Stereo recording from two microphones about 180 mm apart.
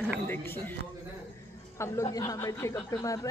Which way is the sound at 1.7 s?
15° left (ahead or behind).